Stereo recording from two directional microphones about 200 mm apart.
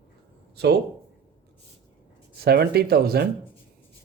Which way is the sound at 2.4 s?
55° right (ahead or behind).